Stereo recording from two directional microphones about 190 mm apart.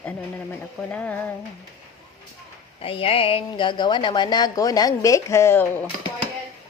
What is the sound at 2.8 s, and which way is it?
A woman's voice, 30° left (ahead or behind).